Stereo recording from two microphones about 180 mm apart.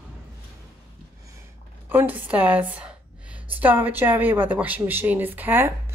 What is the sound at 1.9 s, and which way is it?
A woman's voice, 10° right (ahead or behind).